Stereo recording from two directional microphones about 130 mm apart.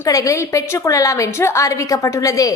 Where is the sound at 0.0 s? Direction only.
25° left (ahead or behind).